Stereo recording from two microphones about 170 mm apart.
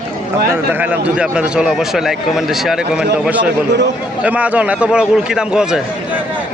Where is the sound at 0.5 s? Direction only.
10° right (ahead or behind).